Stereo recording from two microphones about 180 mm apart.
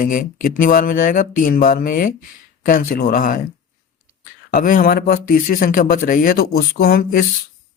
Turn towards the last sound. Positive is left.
turn(degrees=55)  # may be behind; listen again after turning